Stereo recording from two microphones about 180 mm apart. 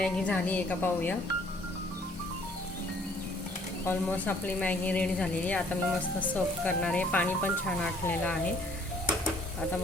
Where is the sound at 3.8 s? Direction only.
10° left (ahead or behind).